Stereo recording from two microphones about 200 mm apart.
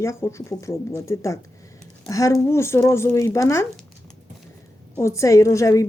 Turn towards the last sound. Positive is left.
turn(degrees=15)  # may be behind; listen again after turning